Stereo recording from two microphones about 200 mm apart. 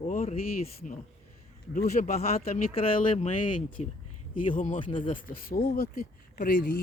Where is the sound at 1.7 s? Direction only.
35° left (ahead or behind).